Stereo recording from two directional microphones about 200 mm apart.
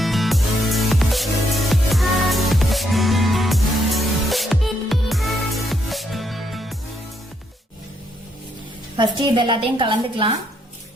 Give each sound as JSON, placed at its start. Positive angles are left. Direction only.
{"t": 0.0, "sound": "music", "side_deg": 0}
{"t": 9.0, "sound": "a woman's voice", "side_deg": -25}